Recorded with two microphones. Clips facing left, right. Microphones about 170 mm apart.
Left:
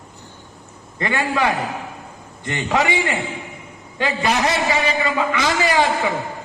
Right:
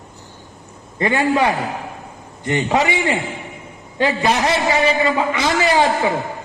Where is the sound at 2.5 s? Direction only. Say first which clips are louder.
Right 2 dB; 20° right (ahead or behind).